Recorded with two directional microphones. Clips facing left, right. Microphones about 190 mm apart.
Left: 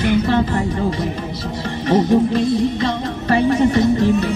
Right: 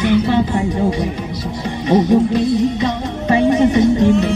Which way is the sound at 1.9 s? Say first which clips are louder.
Right 2 dB; 15° right (ahead or behind).